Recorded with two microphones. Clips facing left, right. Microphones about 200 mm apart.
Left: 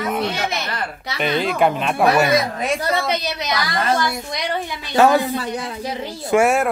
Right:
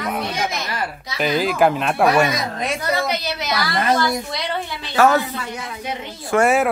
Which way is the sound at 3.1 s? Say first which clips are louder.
Left 1 dB; 20° left (ahead or behind).